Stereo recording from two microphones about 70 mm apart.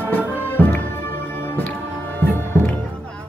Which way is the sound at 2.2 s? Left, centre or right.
Left.